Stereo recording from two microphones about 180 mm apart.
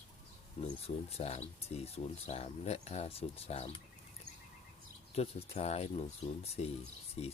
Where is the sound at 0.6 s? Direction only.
35° left (ahead or behind).